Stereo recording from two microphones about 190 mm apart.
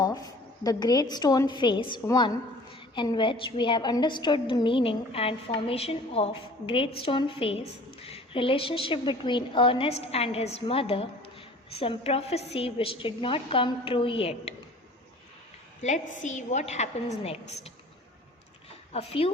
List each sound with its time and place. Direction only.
0.0 s a woman's voice: 20° left (ahead or behind)
16.1 s a woman's voice: 40° left (ahead or behind)
18.9 s a woman's voice: 30° left (ahead or behind)